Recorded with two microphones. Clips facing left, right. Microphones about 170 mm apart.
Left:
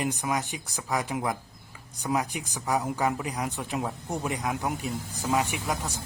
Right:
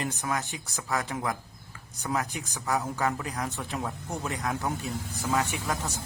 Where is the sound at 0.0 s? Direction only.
10° left (ahead or behind).